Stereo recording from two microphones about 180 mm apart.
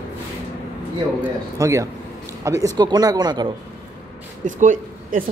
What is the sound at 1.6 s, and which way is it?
Speech, 15° right (ahead or behind).